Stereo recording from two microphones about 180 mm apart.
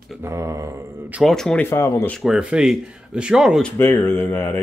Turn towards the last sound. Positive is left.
turn(degrees=10)  # may be behind; listen again after turning